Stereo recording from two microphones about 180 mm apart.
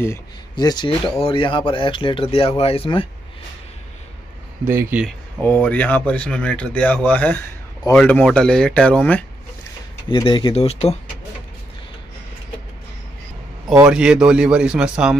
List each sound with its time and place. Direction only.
0.0 s speech: 20° left (ahead or behind)
4.6 s speech: 15° right (ahead or behind)
5.0 s speech: 10° left (ahead or behind)
10.0 s speech: 25° left (ahead or behind)
13.7 s speech: 5° right (ahead or behind)